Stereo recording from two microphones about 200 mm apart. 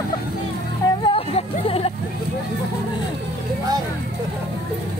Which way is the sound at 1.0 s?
30° left (ahead or behind).